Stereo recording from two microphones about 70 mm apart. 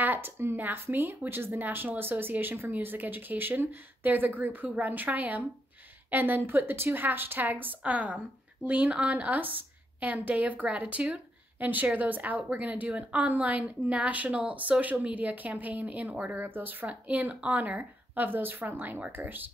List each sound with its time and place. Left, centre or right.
0.0 s speech: right
16.8 s speech: centre